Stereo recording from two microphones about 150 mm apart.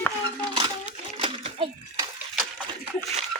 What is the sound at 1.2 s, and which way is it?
Bathtub, 35° right (ahead or behind).